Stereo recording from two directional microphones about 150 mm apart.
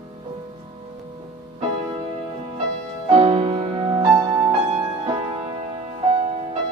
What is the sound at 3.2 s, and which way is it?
Music, 40° right (ahead or behind).